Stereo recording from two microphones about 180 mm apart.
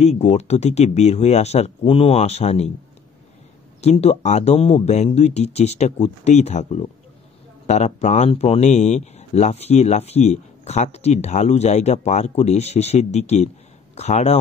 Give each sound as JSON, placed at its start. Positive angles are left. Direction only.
{"t": 0.0, "sound": "speech", "side_deg": 35}
{"t": 3.8, "sound": "speech", "side_deg": 35}